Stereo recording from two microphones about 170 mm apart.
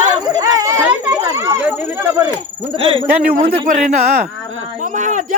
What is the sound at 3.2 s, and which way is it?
A man's voice, 55° right (ahead or behind).